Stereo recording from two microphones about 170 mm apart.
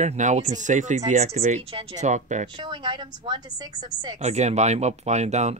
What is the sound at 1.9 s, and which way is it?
Speech, 45° right (ahead or behind).